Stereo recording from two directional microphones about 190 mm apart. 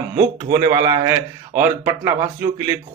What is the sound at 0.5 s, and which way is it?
Speech, 20° right (ahead or behind).